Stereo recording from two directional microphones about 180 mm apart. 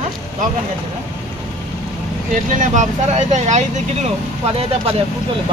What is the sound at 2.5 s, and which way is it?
Speech, 45° right (ahead or behind).